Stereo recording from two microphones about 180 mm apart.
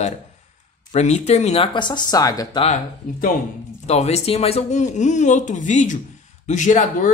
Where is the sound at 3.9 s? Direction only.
35° left (ahead or behind).